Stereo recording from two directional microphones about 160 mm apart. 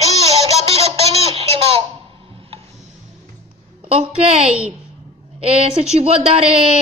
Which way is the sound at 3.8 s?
40° right (ahead or behind).